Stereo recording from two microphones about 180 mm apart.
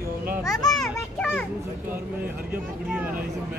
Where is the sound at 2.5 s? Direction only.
10° right (ahead or behind).